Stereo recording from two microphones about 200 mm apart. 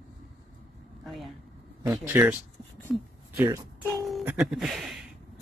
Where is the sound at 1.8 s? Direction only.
10° right (ahead or behind).